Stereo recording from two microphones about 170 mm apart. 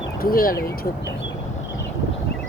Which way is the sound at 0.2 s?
60° left (ahead or behind).